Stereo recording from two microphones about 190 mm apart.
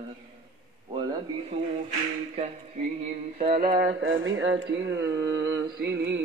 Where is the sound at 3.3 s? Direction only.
40° right (ahead or behind).